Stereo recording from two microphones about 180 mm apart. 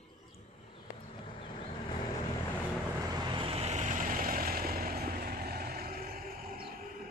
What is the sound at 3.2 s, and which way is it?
Vehicle, 25° right (ahead or behind).